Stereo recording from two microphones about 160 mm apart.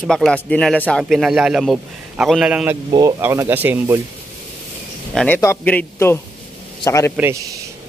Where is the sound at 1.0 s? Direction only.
5° right (ahead or behind).